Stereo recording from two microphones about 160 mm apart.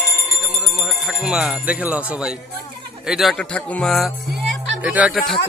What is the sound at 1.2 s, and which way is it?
A man's voice, 5° right (ahead or behind).